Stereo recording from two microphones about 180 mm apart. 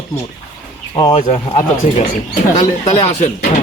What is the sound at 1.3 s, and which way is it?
Speech, 40° left (ahead or behind).